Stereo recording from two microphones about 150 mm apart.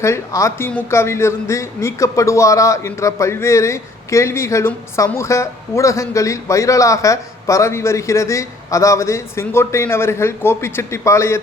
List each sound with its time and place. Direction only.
0.0 s a woman's voice: 20° left (ahead or behind)